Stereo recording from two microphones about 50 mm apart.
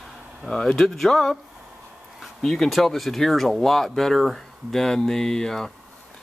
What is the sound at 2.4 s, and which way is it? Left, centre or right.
Speech, centre.